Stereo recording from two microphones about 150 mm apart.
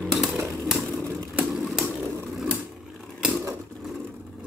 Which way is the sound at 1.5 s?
Centre (ahead or behind).